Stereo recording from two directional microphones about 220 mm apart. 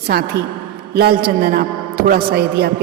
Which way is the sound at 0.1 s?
45° right (ahead or behind).